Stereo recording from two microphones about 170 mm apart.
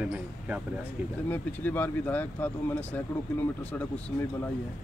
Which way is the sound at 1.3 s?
10° left (ahead or behind).